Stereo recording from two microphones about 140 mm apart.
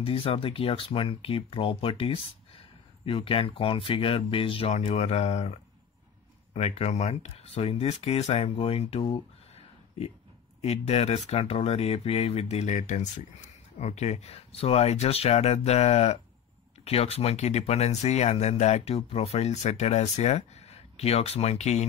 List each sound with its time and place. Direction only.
0.0 s speech: 40° left (ahead or behind)
6.5 s speech: 50° left (ahead or behind)
10.6 s speech: 50° left (ahead or behind)